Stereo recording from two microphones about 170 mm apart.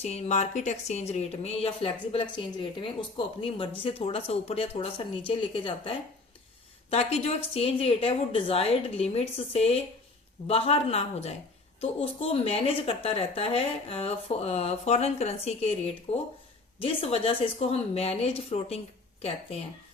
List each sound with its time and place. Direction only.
0.0 s a woman's voice: 40° left (ahead or behind)